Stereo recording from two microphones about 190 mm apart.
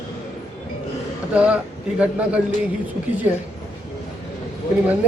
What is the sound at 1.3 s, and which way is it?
Speech, 5° right (ahead or behind).